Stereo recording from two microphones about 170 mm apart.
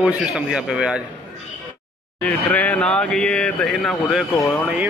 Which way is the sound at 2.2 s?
10° left (ahead or behind).